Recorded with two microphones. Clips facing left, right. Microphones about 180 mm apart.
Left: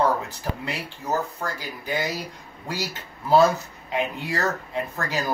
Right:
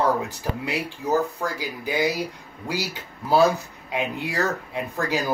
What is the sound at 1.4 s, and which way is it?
A man's voice, 15° right (ahead or behind).